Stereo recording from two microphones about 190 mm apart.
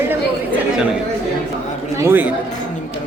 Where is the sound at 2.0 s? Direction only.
10° right (ahead or behind).